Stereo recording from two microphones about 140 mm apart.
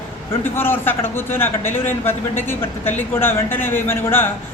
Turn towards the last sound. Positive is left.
turn(degrees=15)  # may be behind; listen again after turning